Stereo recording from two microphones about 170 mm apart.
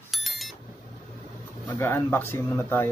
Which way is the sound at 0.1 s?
Centre (ahead or behind).